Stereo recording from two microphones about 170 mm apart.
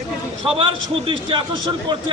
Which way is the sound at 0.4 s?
30° right (ahead or behind).